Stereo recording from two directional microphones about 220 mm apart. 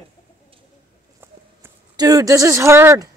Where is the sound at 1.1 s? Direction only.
15° right (ahead or behind).